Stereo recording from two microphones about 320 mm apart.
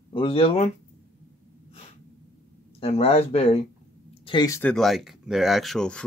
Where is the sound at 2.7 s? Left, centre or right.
Centre.